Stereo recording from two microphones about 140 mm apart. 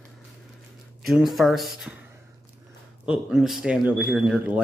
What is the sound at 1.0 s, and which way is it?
Speech, centre (ahead or behind).